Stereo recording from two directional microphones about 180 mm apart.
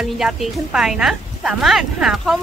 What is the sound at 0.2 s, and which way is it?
A woman's voice, centre (ahead or behind).